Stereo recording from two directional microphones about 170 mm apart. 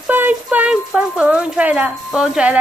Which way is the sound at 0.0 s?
10° right (ahead or behind).